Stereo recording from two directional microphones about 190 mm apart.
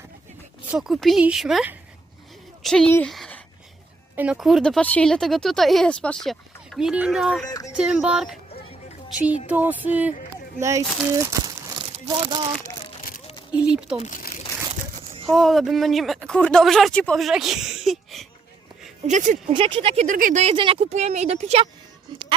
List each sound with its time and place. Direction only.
0.7 s speech: centre (ahead or behind)
4.1 s speech: 5° right (ahead or behind)
7.4 s speech: 20° left (ahead or behind)
7.7 s speech: 5° right (ahead or behind)
9.5 s speech: 10° right (ahead or behind)
13.5 s speech: 5° right (ahead or behind)
14.0 s crumpling: 45° left (ahead or behind)
15.3 s speech: centre (ahead or behind)
19.0 s speech: 40° right (ahead or behind)
19.5 s speech: 25° right (ahead or behind)
20.1 s speech: 45° right (ahead or behind)